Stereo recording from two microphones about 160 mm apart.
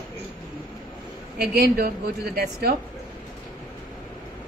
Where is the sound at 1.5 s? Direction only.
75° right (ahead or behind).